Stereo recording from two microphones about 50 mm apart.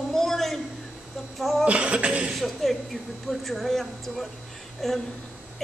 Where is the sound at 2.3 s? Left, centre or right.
Centre.